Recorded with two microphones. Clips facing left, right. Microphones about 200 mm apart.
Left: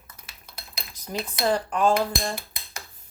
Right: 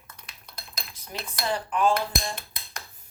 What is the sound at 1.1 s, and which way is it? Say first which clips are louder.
Dishes: left 6 dB; 40° left (ahead or behind).